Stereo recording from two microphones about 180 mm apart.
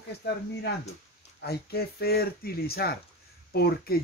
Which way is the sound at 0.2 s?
70° left (ahead or behind).